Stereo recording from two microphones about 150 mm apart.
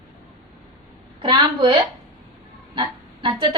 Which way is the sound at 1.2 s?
35° right (ahead or behind).